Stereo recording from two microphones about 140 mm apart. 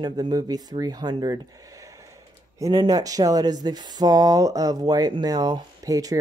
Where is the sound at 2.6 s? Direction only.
30° right (ahead or behind).